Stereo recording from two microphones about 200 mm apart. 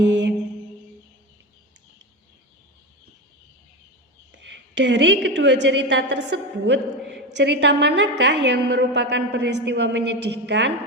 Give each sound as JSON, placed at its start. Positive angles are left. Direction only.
{"t": 0.0, "sound": "mantra", "side_deg": -60}
{"t": 4.3, "sound": "a woman's voice", "side_deg": -65}